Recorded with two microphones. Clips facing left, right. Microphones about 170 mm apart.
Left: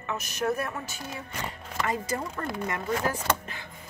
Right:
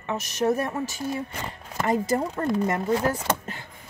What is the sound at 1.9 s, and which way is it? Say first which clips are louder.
Chopping: right 8 dB; 35° right (ahead or behind).